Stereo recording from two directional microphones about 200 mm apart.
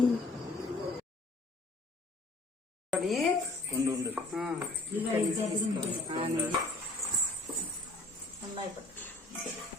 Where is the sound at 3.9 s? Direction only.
5° right (ahead or behind).